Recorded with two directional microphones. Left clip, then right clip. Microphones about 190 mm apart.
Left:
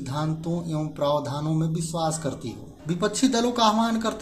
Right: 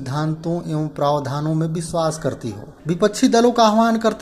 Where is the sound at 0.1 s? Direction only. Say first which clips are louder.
Right 6 dB; 35° right (ahead or behind).